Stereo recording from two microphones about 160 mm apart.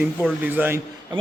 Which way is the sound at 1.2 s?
30° right (ahead or behind).